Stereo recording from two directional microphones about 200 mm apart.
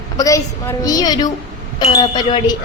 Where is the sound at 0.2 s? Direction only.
15° left (ahead or behind).